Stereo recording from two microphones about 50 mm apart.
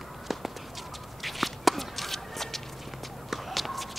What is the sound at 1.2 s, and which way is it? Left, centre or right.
Walk, centre.